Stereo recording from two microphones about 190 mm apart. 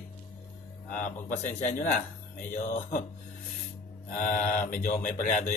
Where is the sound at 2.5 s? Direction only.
40° left (ahead or behind).